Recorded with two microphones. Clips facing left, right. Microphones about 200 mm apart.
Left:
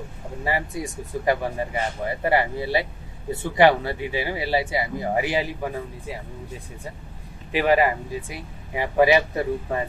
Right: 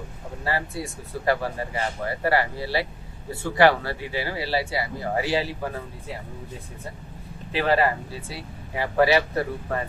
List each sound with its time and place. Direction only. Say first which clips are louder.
0.4 s speech: left 2 dB; 15° left (ahead or behind)
7.5 s speech: left 2 dB; 15° left (ahead or behind)